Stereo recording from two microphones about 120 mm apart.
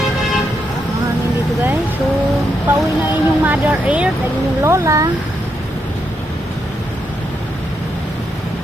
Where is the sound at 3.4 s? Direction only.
15° right (ahead or behind).